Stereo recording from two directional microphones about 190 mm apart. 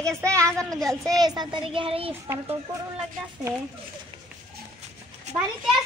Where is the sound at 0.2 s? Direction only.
15° right (ahead or behind).